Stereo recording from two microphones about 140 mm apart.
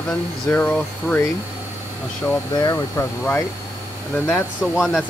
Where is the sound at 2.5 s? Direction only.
25° left (ahead or behind).